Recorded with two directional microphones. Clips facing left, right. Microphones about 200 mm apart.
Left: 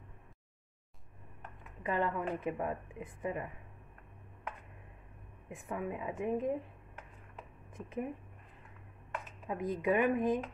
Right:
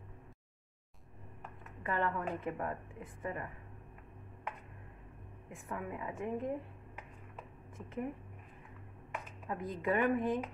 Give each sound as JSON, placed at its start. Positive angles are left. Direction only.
{"t": 1.8, "sound": "a woman's voice", "side_deg": 15}
{"t": 5.5, "sound": "a woman's voice", "side_deg": 20}
{"t": 7.7, "sound": "speech", "side_deg": 15}
{"t": 9.5, "sound": "a woman's voice", "side_deg": 15}